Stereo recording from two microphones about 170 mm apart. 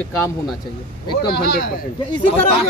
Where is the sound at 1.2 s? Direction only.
70° left (ahead or behind).